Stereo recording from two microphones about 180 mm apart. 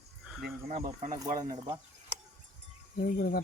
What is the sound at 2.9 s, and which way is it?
Speech, 50° left (ahead or behind).